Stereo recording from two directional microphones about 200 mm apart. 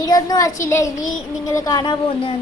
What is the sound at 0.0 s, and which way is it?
Speech, 20° left (ahead or behind).